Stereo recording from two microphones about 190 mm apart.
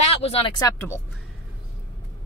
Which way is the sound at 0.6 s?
15° left (ahead or behind).